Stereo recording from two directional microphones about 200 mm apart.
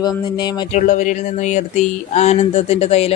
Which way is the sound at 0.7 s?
40° left (ahead or behind).